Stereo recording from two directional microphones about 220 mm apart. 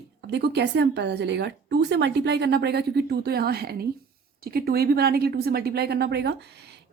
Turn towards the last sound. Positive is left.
turn(degrees=-50)  # may be behind; listen again after turning